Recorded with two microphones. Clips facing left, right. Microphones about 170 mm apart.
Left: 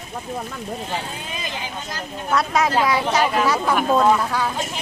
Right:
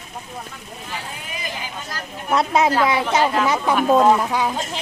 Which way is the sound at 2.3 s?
25° right (ahead or behind).